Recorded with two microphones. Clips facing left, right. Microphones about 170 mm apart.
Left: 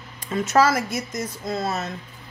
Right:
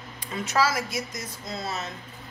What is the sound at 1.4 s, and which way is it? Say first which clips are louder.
Speech: left 6 dB; 60° left (ahead or behind).